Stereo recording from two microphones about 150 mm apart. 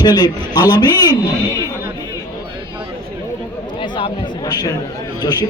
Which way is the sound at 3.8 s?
35° left (ahead or behind).